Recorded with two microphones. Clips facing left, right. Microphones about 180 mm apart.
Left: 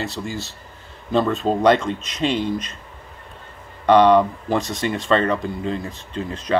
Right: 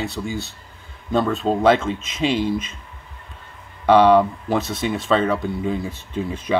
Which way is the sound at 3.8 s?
10° right (ahead or behind).